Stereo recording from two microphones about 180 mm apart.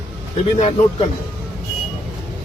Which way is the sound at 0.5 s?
35° left (ahead or behind).